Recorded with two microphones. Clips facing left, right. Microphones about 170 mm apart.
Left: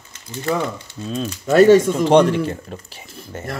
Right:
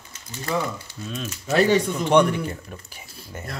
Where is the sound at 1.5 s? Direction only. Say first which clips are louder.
Left 8 dB; 45° left (ahead or behind).